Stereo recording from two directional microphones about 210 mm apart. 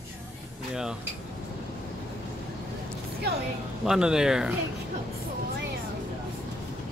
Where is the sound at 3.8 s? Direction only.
5° right (ahead or behind).